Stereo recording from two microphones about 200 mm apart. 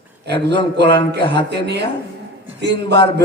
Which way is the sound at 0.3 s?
55° right (ahead or behind).